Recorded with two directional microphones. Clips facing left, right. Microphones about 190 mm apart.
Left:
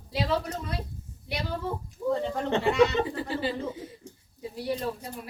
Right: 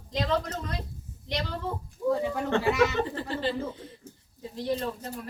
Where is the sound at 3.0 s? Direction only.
10° left (ahead or behind).